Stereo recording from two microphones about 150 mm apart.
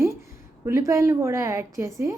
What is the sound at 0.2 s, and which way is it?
A woman's voice, 20° right (ahead or behind).